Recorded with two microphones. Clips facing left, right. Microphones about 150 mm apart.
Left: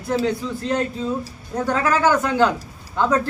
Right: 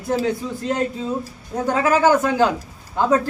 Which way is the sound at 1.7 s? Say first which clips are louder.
Right 3 dB; 15° right (ahead or behind).